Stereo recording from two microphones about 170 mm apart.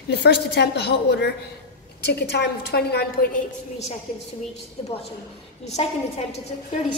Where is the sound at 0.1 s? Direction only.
85° left; by 3.3 s 65° left (ahead or behind).